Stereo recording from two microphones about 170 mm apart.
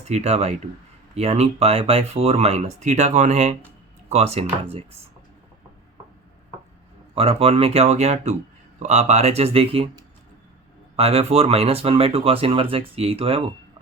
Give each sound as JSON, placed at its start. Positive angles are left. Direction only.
{"t": 0.1, "sound": "speech", "side_deg": -40}
{"t": 7.2, "sound": "speech", "side_deg": -35}
{"t": 10.9, "sound": "speech", "side_deg": -35}